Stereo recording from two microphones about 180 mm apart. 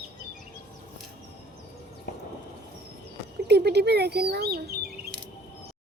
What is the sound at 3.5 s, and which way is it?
Speech, 65° right (ahead or behind).